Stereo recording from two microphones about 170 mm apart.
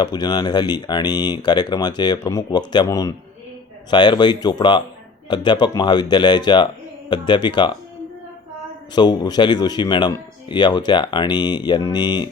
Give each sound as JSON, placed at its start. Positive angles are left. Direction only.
{"t": 0.0, "sound": "speech", "side_deg": 25}
{"t": 9.0, "sound": "speech", "side_deg": 25}